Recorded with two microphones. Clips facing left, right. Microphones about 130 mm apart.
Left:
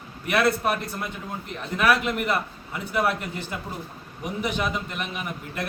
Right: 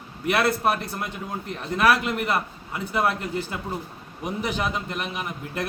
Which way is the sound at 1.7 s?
35° right (ahead or behind).